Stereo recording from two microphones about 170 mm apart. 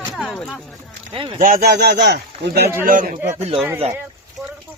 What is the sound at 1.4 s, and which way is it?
Speech, 55° right (ahead or behind).